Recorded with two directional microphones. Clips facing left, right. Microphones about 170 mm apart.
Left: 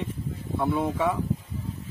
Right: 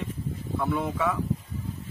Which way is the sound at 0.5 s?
25° left (ahead or behind).